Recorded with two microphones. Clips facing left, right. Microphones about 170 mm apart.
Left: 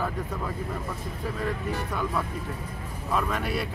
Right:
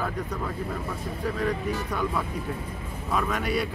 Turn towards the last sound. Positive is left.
turn(degrees=0)  # may be behind; listen again after turning